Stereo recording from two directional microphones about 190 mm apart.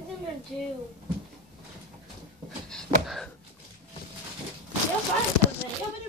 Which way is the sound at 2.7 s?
Centre (ahead or behind).